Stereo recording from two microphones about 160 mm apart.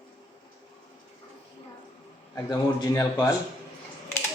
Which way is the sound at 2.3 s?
25° left (ahead or behind).